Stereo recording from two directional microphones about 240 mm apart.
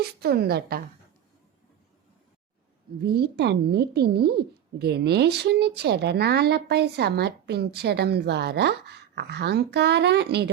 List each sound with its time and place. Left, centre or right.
0.0 s a woman's voice: right
3.0 s speech: right